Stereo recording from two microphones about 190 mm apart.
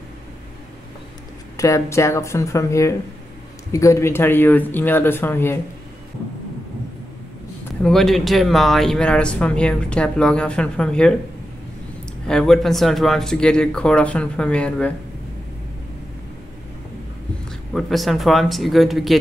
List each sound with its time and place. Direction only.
1.6 s speech: 15° left (ahead or behind)
7.8 s speech: centre (ahead or behind)
12.3 s speech: 5° left (ahead or behind)
17.7 s speech: centre (ahead or behind)